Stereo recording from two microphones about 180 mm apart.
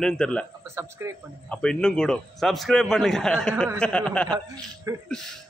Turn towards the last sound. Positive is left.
turn(degrees=-20)  # may be behind; listen again after turning